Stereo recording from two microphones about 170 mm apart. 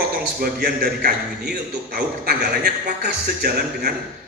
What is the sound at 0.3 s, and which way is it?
A man's voice, 60° right (ahead or behind).